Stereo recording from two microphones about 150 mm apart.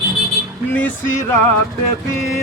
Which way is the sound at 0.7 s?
10° left (ahead or behind).